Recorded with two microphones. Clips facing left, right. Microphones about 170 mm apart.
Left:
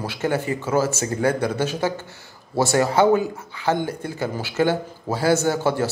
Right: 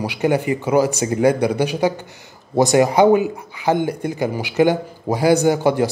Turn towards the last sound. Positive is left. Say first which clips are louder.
# right 5 dB
turn(degrees=-15)  # may be behind; listen again after turning